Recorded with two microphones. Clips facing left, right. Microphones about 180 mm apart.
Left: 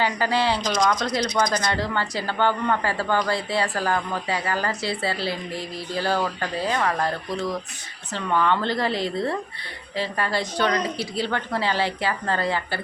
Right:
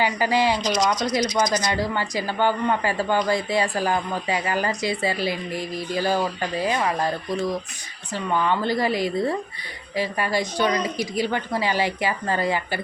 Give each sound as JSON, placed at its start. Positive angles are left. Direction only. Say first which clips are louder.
{"t": 0.0, "sound": "speech", "louder": "right 2 dB", "side_deg": -15}
{"t": 0.6, "sound": "speech", "louder": "even", "side_deg": 55}
{"t": 1.7, "sound": "speech", "louder": "right 1 dB", "side_deg": -10}